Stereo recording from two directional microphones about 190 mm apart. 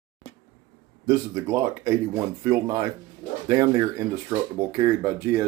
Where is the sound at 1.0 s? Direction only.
15° right (ahead or behind).